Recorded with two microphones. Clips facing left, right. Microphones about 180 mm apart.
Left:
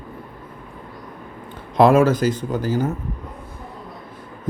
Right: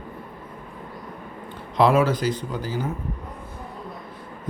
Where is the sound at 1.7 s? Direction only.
45° left (ahead or behind).